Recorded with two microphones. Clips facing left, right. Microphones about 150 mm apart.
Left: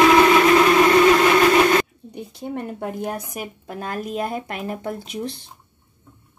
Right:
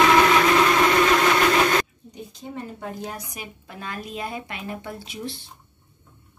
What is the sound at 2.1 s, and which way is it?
Speech, 60° left (ahead or behind).